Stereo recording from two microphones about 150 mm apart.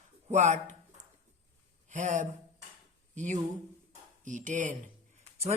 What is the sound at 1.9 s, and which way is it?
Speech, 55° right (ahead or behind).